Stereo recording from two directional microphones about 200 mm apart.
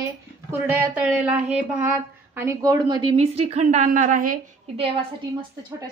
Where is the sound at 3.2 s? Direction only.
30° right (ahead or behind).